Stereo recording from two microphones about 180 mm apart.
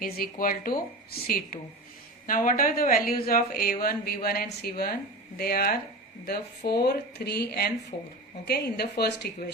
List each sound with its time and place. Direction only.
0.0 s speech: 55° left (ahead or behind)